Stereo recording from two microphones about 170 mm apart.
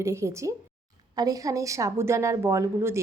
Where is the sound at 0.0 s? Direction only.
15° right (ahead or behind).